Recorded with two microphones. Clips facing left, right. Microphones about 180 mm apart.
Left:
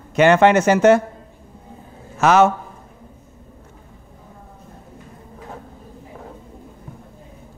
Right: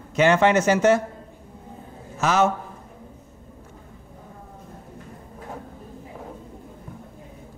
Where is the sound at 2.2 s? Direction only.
70° left (ahead or behind).